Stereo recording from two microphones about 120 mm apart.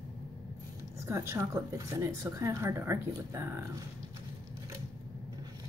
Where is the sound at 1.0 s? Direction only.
20° right (ahead or behind).